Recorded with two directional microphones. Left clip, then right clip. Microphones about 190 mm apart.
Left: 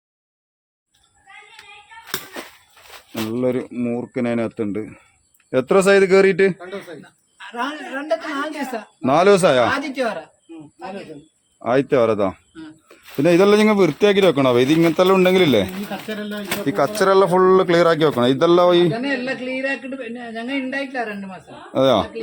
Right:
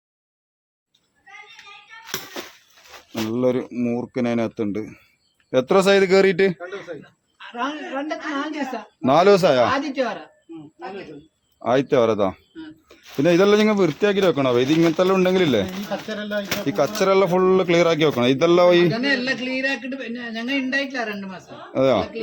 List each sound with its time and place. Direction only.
3.2 s a man's voice: centre (ahead or behind)
7.3 s a woman's voice: 60° left (ahead or behind)
9.0 s a man's voice: 10° left (ahead or behind)
9.6 s a woman's voice: 60° left (ahead or behind)
11.6 s a man's voice: 10° left (ahead or behind)
16.6 s a man's voice: 10° left (ahead or behind)
18.9 s a man's voice: 40° right (ahead or behind)
21.7 s speech: 20° left (ahead or behind)